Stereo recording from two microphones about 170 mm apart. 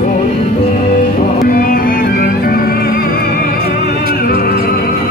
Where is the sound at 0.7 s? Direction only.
50° left (ahead or behind).